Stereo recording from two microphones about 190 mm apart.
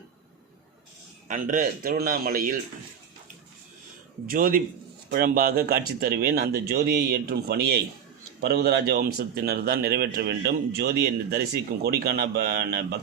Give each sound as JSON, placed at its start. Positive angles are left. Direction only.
{"t": 1.3, "sound": "speech", "side_deg": -45}
{"t": 4.3, "sound": "speech", "side_deg": -50}